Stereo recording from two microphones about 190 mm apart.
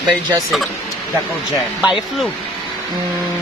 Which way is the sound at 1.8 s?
5° right (ahead or behind).